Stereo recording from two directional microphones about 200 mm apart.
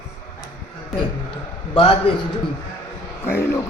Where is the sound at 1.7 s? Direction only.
25° left (ahead or behind).